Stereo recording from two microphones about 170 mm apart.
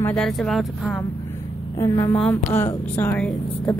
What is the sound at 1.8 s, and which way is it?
Speech, 15° left (ahead or behind).